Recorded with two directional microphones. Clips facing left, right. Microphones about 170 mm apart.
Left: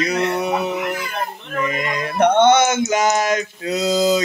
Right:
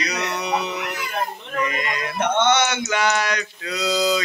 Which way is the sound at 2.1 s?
60° left (ahead or behind).